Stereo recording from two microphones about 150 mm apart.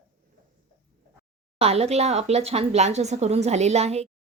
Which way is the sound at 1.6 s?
45° right (ahead or behind).